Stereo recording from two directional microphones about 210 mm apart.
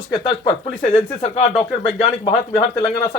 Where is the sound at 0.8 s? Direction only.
30° left (ahead or behind).